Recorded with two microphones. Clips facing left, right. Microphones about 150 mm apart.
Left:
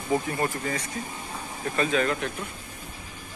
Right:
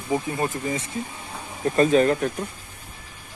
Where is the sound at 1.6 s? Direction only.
40° right (ahead or behind).